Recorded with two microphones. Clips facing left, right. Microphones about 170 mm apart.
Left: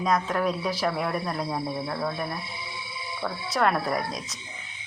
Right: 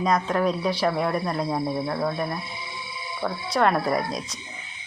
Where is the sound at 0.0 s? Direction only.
Centre (ahead or behind).